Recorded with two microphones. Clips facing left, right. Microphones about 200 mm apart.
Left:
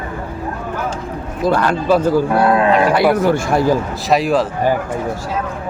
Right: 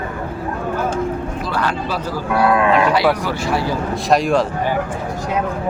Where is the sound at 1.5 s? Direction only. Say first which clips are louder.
Left 10 dB; 50° left (ahead or behind).